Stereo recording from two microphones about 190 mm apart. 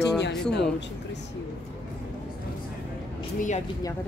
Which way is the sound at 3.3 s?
40° left (ahead or behind).